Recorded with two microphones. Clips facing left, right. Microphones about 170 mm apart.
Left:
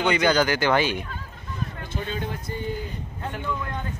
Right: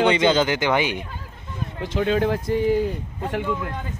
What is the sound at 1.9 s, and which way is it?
Speech, 90° right.